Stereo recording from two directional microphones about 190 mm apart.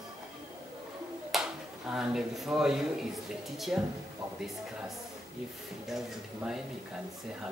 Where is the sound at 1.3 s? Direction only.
5° right (ahead or behind).